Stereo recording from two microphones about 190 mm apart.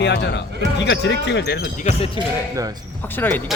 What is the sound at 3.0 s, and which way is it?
Speech, 10° left (ahead or behind).